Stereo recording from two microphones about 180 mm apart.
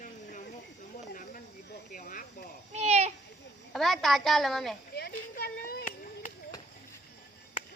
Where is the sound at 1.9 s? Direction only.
50° left (ahead or behind).